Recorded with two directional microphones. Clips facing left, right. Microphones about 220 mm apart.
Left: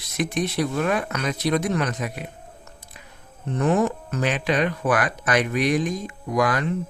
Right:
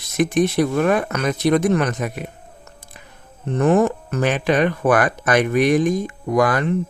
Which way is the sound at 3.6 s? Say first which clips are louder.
Right 5 dB; 50° right (ahead or behind).